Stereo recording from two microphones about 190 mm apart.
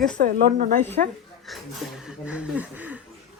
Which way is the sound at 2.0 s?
5° right (ahead or behind).